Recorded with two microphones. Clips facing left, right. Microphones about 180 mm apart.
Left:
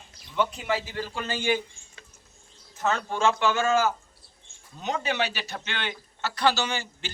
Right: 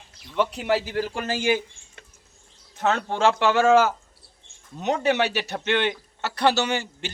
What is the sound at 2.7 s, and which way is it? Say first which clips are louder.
Speech: right 3 dB; 65° right (ahead or behind).